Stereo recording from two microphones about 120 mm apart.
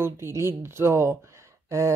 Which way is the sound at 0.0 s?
25° right (ahead or behind).